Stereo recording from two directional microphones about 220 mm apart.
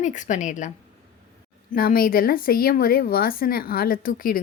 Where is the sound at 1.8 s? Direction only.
40° left (ahead or behind).